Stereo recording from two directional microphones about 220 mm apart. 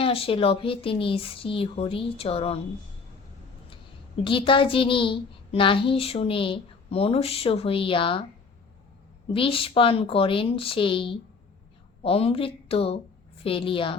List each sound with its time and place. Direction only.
0.0 s a child's voice: 25° left (ahead or behind)
4.2 s a child's voice: 20° left (ahead or behind)
9.3 s a child's voice: 25° left (ahead or behind)